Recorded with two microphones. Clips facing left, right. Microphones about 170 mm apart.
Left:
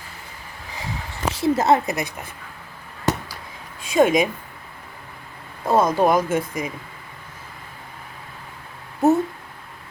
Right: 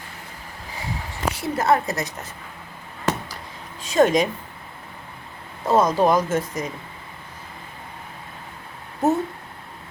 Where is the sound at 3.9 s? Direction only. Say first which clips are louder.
Left 1 dB; 10° left (ahead or behind).